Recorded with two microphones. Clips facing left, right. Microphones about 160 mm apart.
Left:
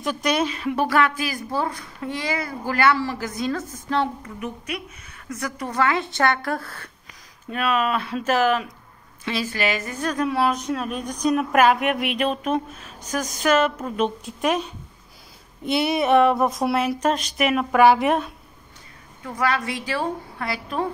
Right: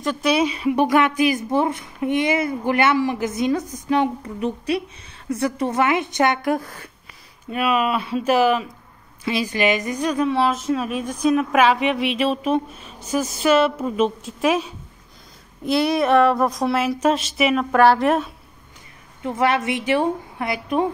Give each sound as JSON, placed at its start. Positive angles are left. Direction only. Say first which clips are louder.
{"t": 0.0, "sound": "speech", "louder": "right 3 dB", "side_deg": 0}
{"t": 0.7, "sound": "a woman's voice", "louder": "right 3 dB", "side_deg": -20}
{"t": 4.2, "sound": "a woman's voice", "louder": "right 7 dB", "side_deg": -30}
{"t": 10.2, "sound": "speech", "louder": "right 1 dB", "side_deg": 0}
{"t": 19.2, "sound": "a woman's voice", "louder": "right 4 dB", "side_deg": -25}